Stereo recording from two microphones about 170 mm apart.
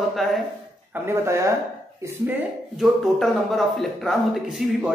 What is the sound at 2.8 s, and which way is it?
Speech, centre (ahead or behind).